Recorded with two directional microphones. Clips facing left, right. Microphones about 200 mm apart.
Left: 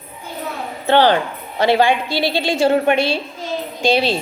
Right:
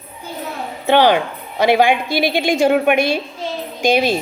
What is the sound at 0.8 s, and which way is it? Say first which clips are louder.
A woman's voice: right 1 dB; 15° right (ahead or behind).